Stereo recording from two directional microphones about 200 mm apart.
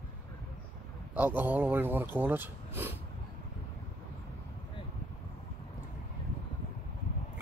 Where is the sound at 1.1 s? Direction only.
10° right (ahead or behind).